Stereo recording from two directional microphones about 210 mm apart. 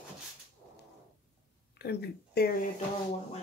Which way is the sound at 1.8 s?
50° left (ahead or behind).